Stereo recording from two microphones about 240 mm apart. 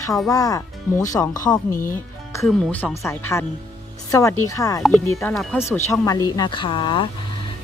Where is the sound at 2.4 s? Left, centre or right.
Centre.